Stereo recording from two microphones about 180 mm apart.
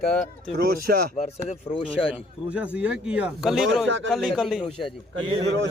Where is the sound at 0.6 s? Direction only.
55° right (ahead or behind).